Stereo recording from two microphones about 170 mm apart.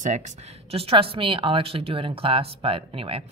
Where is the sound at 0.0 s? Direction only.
45° right (ahead or behind).